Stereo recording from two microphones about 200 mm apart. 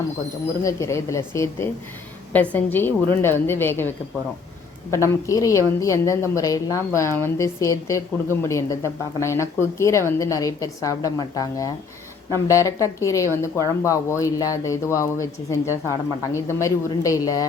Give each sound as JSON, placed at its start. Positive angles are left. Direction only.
{"t": 0.6, "sound": "a woman's voice", "side_deg": 15}